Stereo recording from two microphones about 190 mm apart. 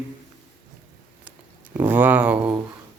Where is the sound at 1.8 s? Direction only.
10° right (ahead or behind).